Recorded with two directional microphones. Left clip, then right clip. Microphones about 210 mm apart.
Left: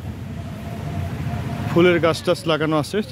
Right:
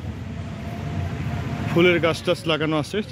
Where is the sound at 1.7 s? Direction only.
10° left (ahead or behind).